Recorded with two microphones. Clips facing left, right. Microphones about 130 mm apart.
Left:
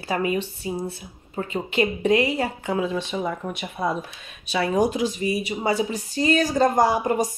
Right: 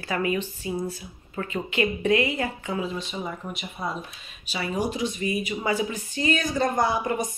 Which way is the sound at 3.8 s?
70° left (ahead or behind).